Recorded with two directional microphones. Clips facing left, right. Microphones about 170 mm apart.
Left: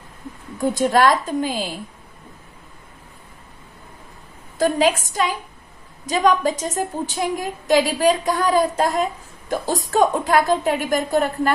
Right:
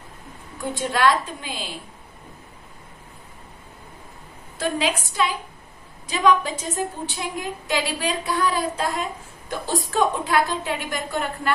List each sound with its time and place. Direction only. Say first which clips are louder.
0.7 s a woman's voice: left 3 dB; 45° left (ahead or behind)
4.6 s a woman's voice: left 6 dB; 45° left (ahead or behind)